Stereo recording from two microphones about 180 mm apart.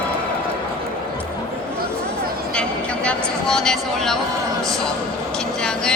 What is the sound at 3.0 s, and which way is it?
Speech, 5° left (ahead or behind).